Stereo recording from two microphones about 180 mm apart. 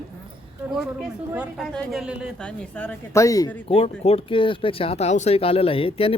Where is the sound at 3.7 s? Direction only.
35° left (ahead or behind).